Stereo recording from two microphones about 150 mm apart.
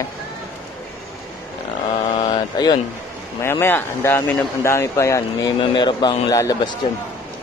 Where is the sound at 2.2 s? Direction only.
25° left (ahead or behind).